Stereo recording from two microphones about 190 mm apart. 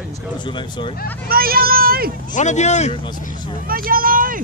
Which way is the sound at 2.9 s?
25° left (ahead or behind).